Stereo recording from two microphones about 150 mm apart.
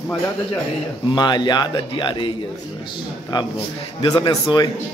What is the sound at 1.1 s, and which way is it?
A man's voice, 30° left (ahead or behind).